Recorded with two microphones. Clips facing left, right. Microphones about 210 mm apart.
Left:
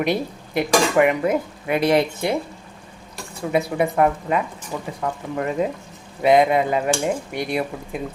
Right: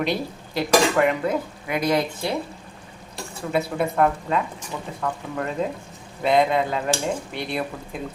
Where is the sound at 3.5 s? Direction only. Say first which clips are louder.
Left 3 dB; 15° left (ahead or behind).